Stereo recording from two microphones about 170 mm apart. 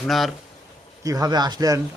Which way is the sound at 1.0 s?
20° right (ahead or behind).